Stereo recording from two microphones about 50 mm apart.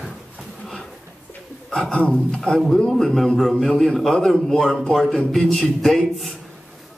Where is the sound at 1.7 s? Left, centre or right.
Centre.